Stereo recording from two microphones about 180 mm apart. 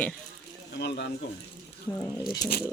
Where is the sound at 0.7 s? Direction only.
70° left (ahead or behind).